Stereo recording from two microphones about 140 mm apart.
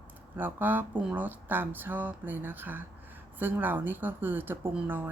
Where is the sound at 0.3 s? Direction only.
15° right (ahead or behind).